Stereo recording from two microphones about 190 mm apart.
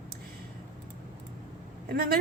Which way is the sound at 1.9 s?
50° right (ahead or behind).